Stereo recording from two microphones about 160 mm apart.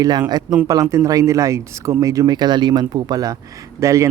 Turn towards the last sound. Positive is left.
turn(degrees=-20)  # may be behind; listen again after turning